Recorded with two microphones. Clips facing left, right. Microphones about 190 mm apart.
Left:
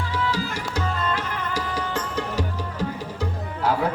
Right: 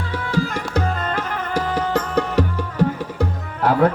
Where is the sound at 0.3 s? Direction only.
55° right (ahead or behind).